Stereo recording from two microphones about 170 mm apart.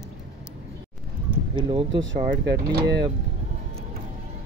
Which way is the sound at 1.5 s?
30° right (ahead or behind).